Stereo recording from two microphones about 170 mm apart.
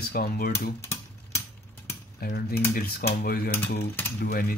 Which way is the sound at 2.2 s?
60° left (ahead or behind).